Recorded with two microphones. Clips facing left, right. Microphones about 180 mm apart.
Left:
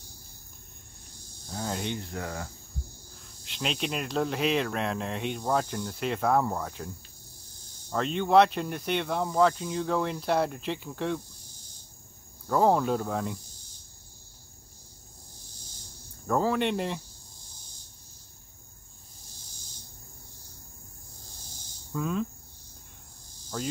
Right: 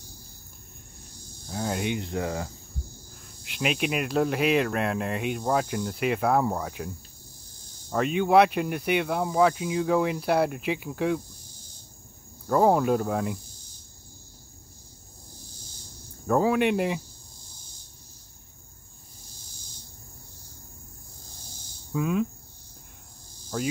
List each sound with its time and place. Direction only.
1.5 s cricket: 5° right (ahead or behind)
2.0 s speech: 20° right (ahead or behind)
3.4 s speech: 10° right (ahead or behind)
7.9 s speech: 10° right (ahead or behind)
12.4 s cricket: 5° right (ahead or behind)
16.3 s speech: 5° right (ahead or behind)
21.9 s speech: 10° right (ahead or behind)